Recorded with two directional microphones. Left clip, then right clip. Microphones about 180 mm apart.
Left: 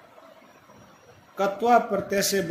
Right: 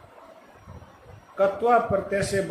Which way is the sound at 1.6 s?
40° left (ahead or behind).